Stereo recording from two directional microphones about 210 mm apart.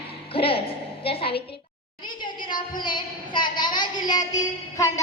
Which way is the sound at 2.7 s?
20° left (ahead or behind).